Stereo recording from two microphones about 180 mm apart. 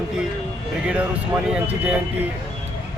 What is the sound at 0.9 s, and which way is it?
Speech, 5° right (ahead or behind).